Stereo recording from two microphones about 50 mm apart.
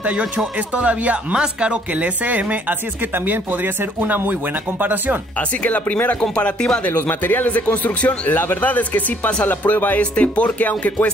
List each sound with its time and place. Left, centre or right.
0.7 s speech: right
3.3 s speech: right
5.6 s speech: left
6.9 s speech: left